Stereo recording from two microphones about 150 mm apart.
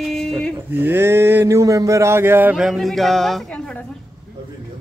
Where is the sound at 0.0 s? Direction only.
Centre (ahead or behind).